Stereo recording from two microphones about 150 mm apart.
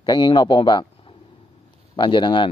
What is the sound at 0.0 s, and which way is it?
A man's voice, 30° left (ahead or behind).